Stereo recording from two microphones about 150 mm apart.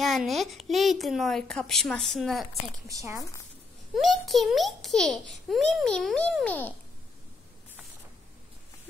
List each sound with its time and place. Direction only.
0.0 s a child's voice: centre (ahead or behind)
2.9 s a woman's voice: 20° right (ahead or behind)
3.9 s a child's voice: centre (ahead or behind)